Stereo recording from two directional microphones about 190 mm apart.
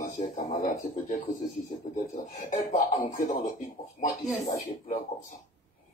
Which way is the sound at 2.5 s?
40° left (ahead or behind).